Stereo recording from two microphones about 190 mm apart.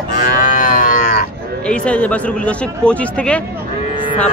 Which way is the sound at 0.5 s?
45° left (ahead or behind).